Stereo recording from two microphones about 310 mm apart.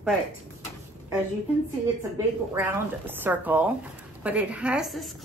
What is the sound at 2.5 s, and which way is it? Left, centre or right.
Speech, centre.